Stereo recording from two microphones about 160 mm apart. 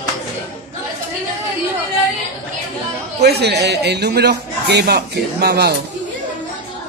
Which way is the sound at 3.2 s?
90° right.